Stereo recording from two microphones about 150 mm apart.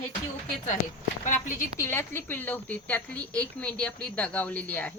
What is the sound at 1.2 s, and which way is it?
Speech, 60° left (ahead or behind).